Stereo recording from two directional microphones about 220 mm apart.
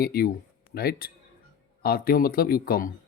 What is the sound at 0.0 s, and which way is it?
Speech, 45° left (ahead or behind).